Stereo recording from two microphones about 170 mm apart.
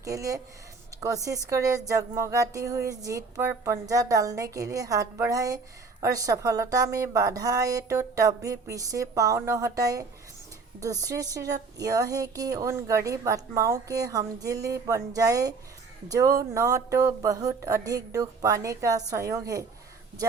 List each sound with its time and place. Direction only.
0.0 s a woman's voice: 20° right (ahead or behind)